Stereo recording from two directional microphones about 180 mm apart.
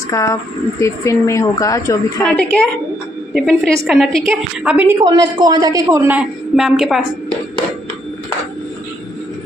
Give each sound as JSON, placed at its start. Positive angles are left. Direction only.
{"t": 0.1, "sound": "speech", "side_deg": 15}
{"t": 3.3, "sound": "a woman's voice", "side_deg": 5}
{"t": 5.0, "sound": "a woman's voice", "side_deg": -25}